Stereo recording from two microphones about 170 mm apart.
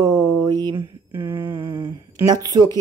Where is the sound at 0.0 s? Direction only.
20° right (ahead or behind).